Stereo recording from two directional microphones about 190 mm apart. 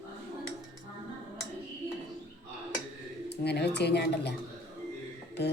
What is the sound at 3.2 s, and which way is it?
A woman's voice, 60° left (ahead or behind).